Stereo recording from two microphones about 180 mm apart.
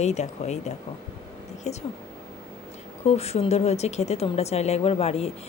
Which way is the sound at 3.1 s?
35° left (ahead or behind).